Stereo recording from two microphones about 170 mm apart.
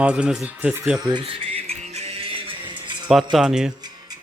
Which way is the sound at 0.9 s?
25° right (ahead or behind).